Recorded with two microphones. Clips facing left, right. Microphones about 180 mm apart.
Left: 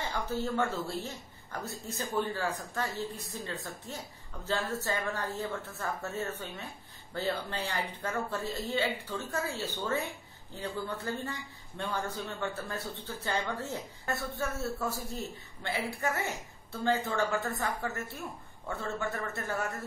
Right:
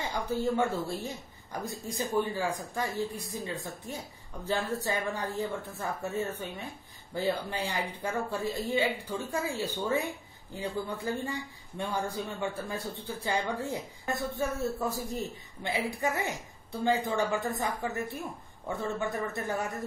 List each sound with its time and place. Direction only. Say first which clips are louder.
0.1 s a man's voice: right 5 dB; 15° right (ahead or behind)